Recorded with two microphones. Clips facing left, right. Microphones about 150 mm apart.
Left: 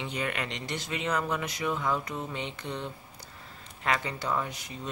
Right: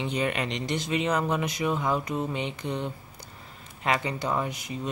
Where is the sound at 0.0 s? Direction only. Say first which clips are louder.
Right 5 dB; 25° right (ahead or behind).